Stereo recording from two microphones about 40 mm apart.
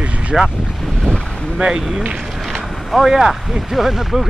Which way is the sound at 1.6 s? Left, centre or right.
Centre.